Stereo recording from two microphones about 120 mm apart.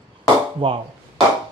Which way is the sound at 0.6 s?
45° right (ahead or behind).